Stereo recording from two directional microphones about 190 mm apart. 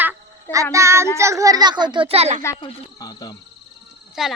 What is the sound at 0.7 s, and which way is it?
Child singing, 15° right (ahead or behind).